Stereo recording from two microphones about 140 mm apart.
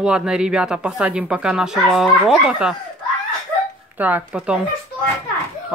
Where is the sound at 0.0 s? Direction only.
5° right (ahead or behind).